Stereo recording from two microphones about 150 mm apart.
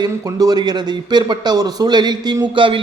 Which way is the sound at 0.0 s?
25° right (ahead or behind).